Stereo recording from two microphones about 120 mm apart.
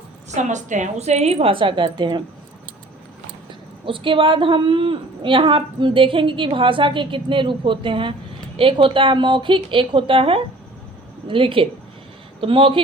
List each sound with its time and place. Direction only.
0.3 s a woman's voice: 90° right; by 2.2 s 40° right (ahead or behind)
3.8 s a woman's voice: 45° right (ahead or behind)